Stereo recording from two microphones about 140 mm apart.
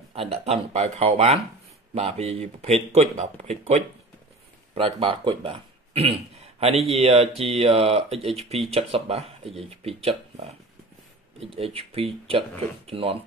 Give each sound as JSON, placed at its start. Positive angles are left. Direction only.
{"t": 0.1, "sound": "speech", "side_deg": -45}
{"t": 4.7, "sound": "speech", "side_deg": -40}